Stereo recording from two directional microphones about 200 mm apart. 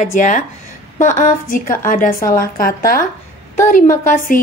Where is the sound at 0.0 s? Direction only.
40° left (ahead or behind).